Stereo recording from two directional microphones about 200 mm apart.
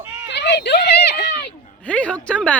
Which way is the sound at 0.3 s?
60° left (ahead or behind).